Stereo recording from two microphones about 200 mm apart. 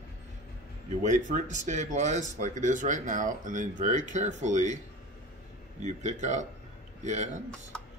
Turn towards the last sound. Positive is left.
turn(degrees=-35)  # may be behind; listen again after turning